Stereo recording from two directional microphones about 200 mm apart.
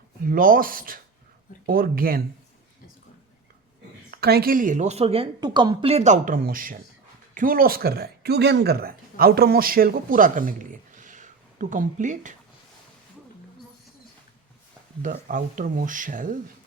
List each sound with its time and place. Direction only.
0.2 s speech: 45° right (ahead or behind)
4.1 s a woman's voice: 50° right (ahead or behind)
15.0 s a woman's voice: 40° right (ahead or behind)